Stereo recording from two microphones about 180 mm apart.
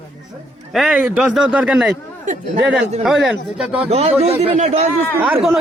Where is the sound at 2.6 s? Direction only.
90° right.